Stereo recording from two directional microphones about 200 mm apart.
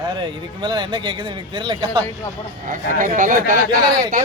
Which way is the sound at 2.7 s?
40° right (ahead or behind).